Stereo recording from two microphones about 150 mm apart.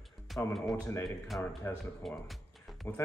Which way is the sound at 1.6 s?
15° left (ahead or behind).